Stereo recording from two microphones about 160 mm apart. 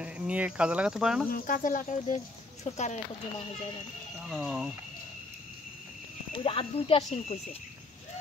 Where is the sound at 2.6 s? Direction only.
45° left (ahead or behind).